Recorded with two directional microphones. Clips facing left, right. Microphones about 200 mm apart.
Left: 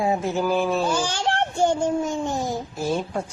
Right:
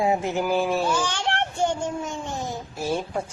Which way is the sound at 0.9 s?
35° left (ahead or behind).